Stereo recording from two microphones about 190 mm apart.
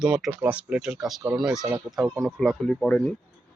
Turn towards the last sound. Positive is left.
turn(degrees=5)  # may be behind; listen again after turning